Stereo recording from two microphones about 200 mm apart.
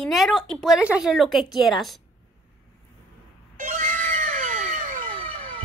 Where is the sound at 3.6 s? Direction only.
40° right (ahead or behind).